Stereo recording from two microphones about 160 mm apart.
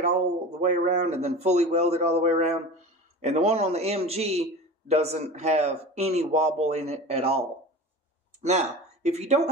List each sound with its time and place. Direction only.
0.0 s a man's voice: 45° right (ahead or behind)